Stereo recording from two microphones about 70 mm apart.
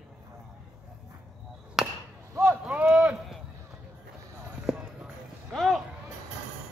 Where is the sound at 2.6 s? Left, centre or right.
Centre.